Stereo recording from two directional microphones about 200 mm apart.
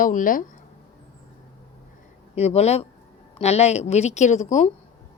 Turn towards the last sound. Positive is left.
turn(degrees=35)  # may be behind; listen again after turning